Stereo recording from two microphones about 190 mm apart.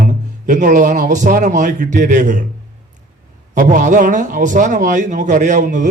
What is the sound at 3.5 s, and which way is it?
A man's voice, 40° right (ahead or behind).